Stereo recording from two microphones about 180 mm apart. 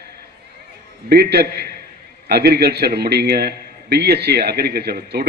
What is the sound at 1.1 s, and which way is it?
A man's voice, 60° right (ahead or behind).